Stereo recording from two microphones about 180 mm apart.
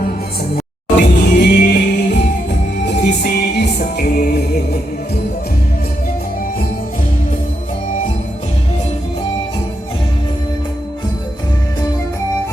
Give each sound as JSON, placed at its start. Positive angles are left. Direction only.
{"t": 0.9, "sound": "music", "side_deg": 65}